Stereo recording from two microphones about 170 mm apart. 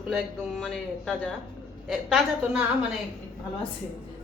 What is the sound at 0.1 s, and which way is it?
Speech, centre (ahead or behind).